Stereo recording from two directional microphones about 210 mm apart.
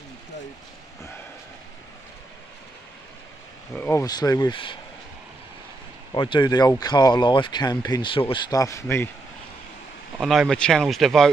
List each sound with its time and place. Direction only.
3.7 s speech: 10° left (ahead or behind)
6.1 s speech: 25° left (ahead or behind)
10.1 s speech: centre (ahead or behind)